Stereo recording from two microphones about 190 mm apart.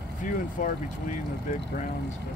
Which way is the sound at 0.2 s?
45° left (ahead or behind).